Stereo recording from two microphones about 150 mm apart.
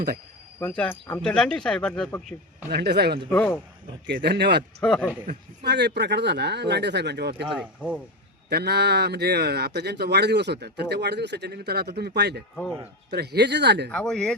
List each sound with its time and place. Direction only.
0.6 s speech: 10° left (ahead or behind)
2.6 s speech: 90° right
3.2 s speech: 10° left (ahead or behind)
4.1 s speech: 90° right
4.8 s speech: 5° left (ahead or behind)
5.9 s speech: 90° right
8.4 s speech: 90° right
13.9 s speech: 5° left (ahead or behind)